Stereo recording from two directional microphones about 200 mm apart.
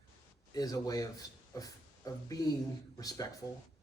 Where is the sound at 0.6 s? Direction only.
20° left (ahead or behind).